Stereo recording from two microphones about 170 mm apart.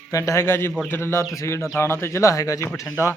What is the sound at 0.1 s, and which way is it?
Speech, 20° left (ahead or behind).